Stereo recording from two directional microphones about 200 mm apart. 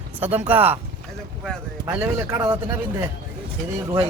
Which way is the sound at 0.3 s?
10° right (ahead or behind).